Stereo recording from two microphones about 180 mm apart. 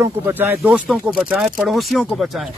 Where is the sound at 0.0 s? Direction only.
10° right (ahead or behind).